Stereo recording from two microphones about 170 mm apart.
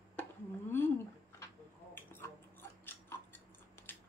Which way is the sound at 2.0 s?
15° left (ahead or behind).